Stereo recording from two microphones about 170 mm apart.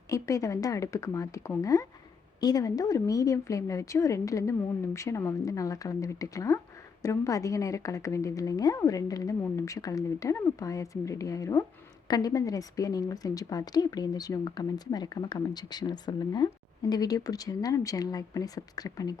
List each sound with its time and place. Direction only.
0.1 s a woman's voice: 20° left (ahead or behind)